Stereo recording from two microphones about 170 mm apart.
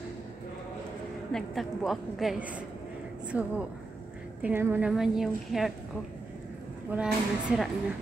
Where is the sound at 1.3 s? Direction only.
Centre (ahead or behind).